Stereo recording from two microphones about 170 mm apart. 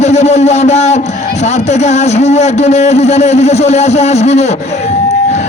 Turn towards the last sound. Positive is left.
turn(degrees=40)  # may be behind; listen again after turning